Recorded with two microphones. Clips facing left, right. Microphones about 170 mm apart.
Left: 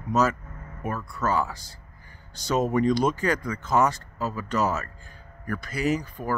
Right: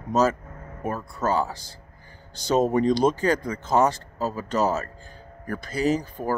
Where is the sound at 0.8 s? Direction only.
35° right (ahead or behind).